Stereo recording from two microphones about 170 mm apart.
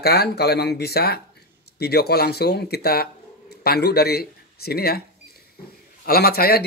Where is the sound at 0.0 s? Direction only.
70° left (ahead or behind).